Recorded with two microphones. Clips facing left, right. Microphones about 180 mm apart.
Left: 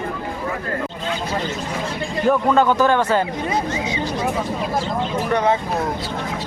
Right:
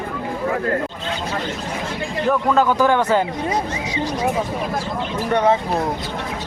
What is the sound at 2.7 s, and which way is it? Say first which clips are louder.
Speech: even; 15° right (ahead or behind).